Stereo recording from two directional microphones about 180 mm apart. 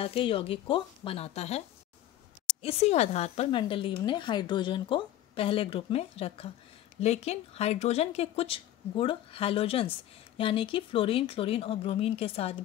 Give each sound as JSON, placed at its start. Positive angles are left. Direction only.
{"t": 0.0, "sound": "speech", "side_deg": 30}
{"t": 2.6, "sound": "speech", "side_deg": 35}